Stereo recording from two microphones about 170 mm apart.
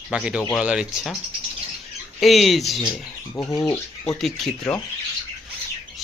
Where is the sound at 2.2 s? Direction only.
Centre (ahead or behind).